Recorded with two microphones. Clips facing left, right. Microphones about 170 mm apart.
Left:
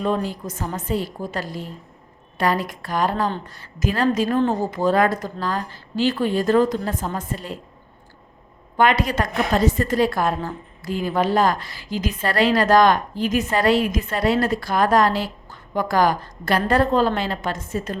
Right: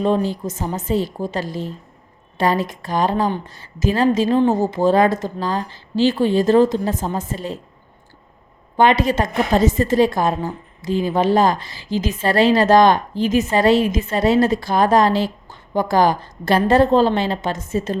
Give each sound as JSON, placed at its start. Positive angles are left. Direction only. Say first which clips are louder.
{"t": 0.0, "sound": "a woman's voice", "louder": "right 5 dB", "side_deg": -30}
{"t": 8.7, "sound": "a woman's voice", "louder": "right 3 dB", "side_deg": -25}